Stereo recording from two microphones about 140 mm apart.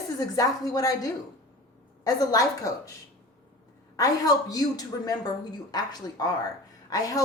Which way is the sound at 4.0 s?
25° left (ahead or behind).